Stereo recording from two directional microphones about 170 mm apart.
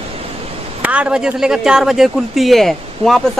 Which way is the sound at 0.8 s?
10° right (ahead or behind).